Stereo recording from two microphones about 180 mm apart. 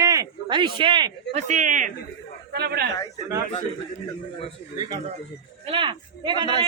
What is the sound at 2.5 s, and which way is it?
Speech, 60° right (ahead or behind).